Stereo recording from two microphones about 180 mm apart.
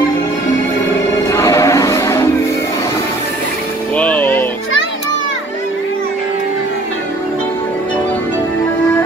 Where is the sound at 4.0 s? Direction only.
10° left (ahead or behind).